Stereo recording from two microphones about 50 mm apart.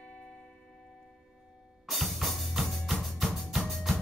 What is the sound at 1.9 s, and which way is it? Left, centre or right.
Drum, centre.